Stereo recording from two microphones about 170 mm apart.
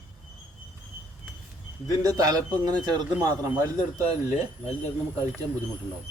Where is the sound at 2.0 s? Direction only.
20° right (ahead or behind).